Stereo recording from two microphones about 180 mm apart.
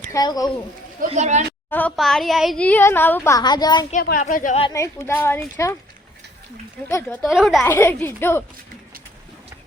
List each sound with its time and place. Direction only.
0.1 s speech: 20° left (ahead or behind)
0.9 s speech: 40° right (ahead or behind)
1.7 s a woman's voice: 5° left (ahead or behind); by 3.8 s 25° left (ahead or behind)
4.2 s speech: 45° left (ahead or behind)
4.7 s a woman's voice: 15° left (ahead or behind)
6.8 s a woman's voice: 10° left (ahead or behind)
7.3 s a woman's voice: centre (ahead or behind)
7.6 s a woman's voice: 15° left (ahead or behind)